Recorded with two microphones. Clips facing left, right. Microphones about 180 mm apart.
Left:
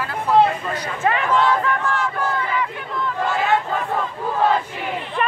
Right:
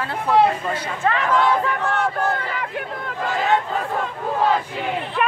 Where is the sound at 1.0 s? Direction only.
15° left (ahead or behind).